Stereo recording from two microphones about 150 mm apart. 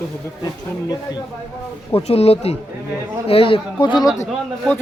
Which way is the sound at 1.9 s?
40° left (ahead or behind).